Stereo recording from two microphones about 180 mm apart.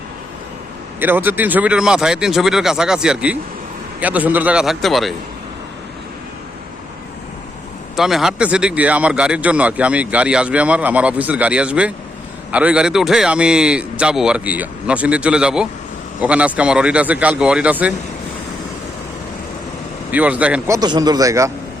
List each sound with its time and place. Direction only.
0.9 s a man's voice: 10° right (ahead or behind)
7.9 s a man's voice: centre (ahead or behind)
20.1 s speech: 10° right (ahead or behind)
20.7 s a man's voice: 20° right (ahead or behind)